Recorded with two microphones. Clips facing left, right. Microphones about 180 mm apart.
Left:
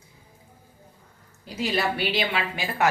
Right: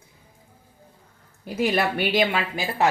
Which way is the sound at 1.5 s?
55° right (ahead or behind).